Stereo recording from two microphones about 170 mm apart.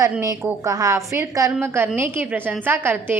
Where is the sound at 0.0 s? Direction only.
20° right (ahead or behind).